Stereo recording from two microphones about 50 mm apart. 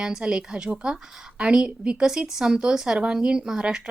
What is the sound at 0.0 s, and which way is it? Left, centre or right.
A woman's voice, centre.